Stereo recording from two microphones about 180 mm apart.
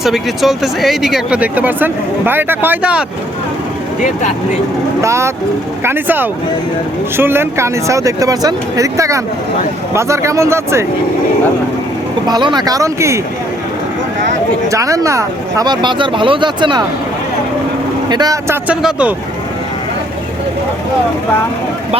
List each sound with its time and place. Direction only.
0.0 s speech: centre (ahead or behind)
5.0 s speech: 15° right (ahead or behind)
12.3 s speech: 25° right (ahead or behind)
14.7 s speech: 20° right (ahead or behind)
18.1 s speech: 20° right (ahead or behind)
18.7 s speech: 5° right (ahead or behind)